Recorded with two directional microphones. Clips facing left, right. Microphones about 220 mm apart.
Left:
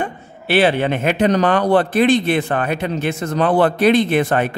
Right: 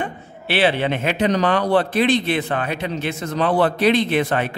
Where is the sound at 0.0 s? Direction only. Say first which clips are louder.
Left 3 dB; 45° left (ahead or behind).